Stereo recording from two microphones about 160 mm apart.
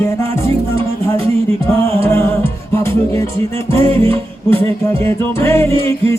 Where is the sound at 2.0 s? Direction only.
15° left (ahead or behind).